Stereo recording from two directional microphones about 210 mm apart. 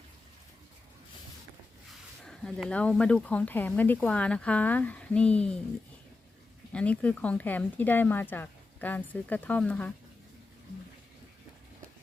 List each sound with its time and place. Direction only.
2.2 s speech: 5° left (ahead or behind)
6.7 s speech: 5° left (ahead or behind)